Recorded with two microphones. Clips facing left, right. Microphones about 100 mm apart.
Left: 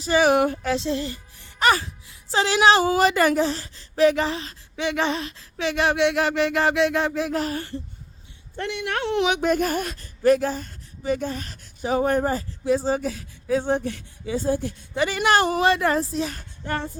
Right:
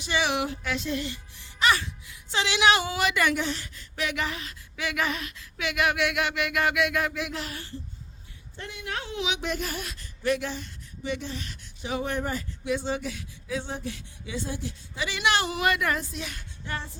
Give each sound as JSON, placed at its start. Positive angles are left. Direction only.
{"t": 0.0, "sound": "speech", "side_deg": 40}
{"t": 0.7, "sound": "speech", "side_deg": 30}
{"t": 1.5, "sound": "speech", "side_deg": 45}
{"t": 8.5, "sound": "speech", "side_deg": 75}
{"t": 15.6, "sound": "speech", "side_deg": 30}